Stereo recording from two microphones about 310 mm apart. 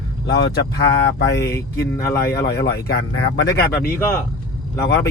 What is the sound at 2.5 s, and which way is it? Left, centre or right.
Speech, left.